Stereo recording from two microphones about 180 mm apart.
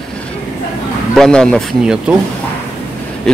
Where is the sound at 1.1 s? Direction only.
5° left (ahead or behind).